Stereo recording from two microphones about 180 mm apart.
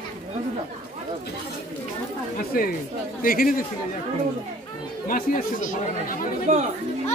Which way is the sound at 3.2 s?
50° left (ahead or behind).